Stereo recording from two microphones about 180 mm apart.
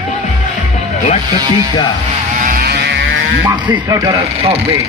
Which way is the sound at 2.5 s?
55° right (ahead or behind).